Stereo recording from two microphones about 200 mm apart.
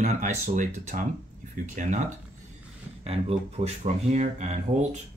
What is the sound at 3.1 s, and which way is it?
Speech, 30° right (ahead or behind).